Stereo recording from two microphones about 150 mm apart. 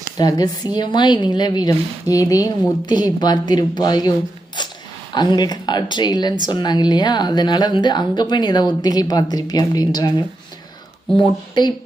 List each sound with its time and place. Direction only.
0.2 s a woman's voice: 25° left (ahead or behind)
4.6 s a sound: 30° left (ahead or behind)
5.1 s a woman's voice: 30° left (ahead or behind)